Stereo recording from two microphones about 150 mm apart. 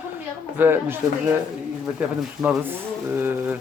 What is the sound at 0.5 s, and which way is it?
Speech, 15° right (ahead or behind).